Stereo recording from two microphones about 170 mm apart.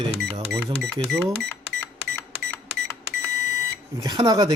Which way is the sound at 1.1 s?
Centre (ahead or behind).